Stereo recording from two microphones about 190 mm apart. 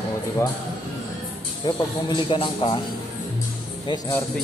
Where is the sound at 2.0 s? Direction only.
25° left (ahead or behind).